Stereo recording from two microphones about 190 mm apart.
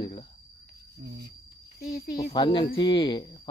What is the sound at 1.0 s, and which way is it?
Speech, 60° right (ahead or behind).